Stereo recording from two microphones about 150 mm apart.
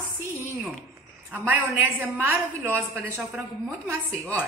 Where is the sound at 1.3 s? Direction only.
15° right (ahead or behind).